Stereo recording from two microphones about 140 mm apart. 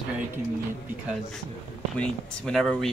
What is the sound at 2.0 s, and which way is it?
Speech, 5° left (ahead or behind).